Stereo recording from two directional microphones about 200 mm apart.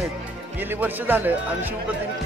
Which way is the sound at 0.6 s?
10° right (ahead or behind).